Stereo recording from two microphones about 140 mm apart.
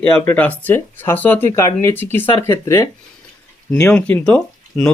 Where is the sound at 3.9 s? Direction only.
10° left (ahead or behind).